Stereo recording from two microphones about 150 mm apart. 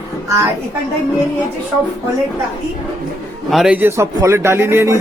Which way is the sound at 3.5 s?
5° right (ahead or behind).